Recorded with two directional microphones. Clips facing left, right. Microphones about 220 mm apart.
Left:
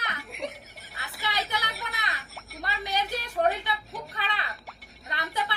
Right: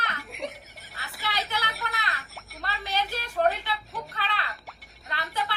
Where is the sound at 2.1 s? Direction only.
Centre (ahead or behind).